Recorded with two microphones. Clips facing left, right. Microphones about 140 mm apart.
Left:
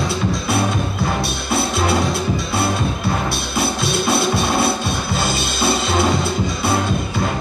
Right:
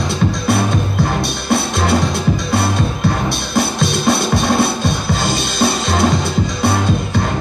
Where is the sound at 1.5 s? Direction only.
50° right (ahead or behind).